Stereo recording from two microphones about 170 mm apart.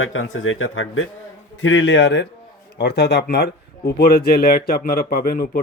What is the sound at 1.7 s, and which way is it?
Speech, 90° left.